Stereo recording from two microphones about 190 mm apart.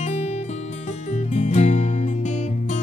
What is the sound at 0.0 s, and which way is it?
Music, 35° left (ahead or behind).